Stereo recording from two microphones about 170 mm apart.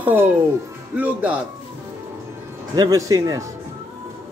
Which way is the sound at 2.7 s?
20° right (ahead or behind).